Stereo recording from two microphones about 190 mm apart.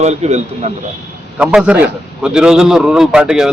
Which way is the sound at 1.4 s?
5° right (ahead or behind).